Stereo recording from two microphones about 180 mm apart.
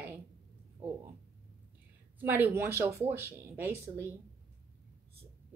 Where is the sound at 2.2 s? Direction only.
10° right (ahead or behind).